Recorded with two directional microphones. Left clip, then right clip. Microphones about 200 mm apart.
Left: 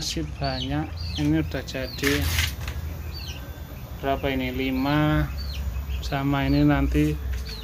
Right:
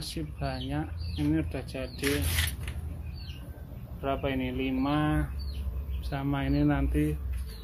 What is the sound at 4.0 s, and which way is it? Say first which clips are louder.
Speech: left 5 dB; 15° right (ahead or behind).